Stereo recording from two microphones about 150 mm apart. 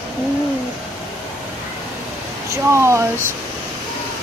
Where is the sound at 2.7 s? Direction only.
20° right (ahead or behind).